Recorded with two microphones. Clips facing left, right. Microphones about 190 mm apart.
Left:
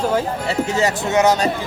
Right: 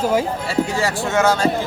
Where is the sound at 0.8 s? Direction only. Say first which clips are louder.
Left 5 dB; 20° left (ahead or behind).